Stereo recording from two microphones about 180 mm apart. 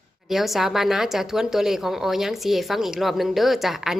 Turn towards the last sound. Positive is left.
turn(degrees=0)  # may be behind; listen again after turning